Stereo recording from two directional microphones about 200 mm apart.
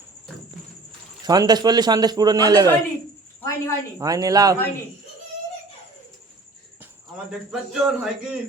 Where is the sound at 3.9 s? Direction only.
15° right (ahead or behind).